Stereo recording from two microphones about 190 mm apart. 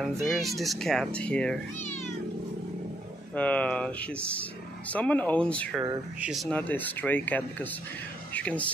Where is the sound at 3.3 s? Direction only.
5° left (ahead or behind).